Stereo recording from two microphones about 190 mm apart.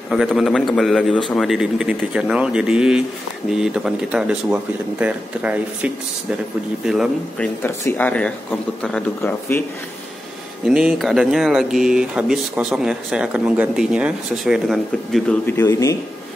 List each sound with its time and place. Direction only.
0.1 s speech: centre (ahead or behind)
7.6 s speech: 10° left (ahead or behind)
10.6 s speech: 5° right (ahead or behind)
15.4 s speech: 15° left (ahead or behind)